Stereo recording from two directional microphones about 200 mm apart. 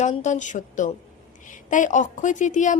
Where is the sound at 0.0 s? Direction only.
35° left (ahead or behind).